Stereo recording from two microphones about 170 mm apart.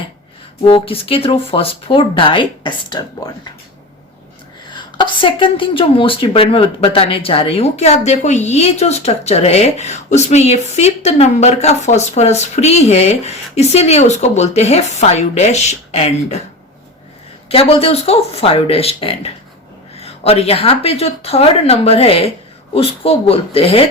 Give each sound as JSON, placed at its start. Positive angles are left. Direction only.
{"t": 0.6, "sound": "speech", "side_deg": 35}
{"t": 4.7, "sound": "speech", "side_deg": 25}
{"t": 17.5, "sound": "speech", "side_deg": 35}